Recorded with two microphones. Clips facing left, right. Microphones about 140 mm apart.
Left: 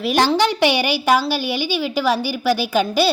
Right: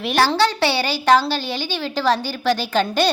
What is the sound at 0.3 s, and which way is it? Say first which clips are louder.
A woman's voice: left 2 dB; 15° left (ahead or behind).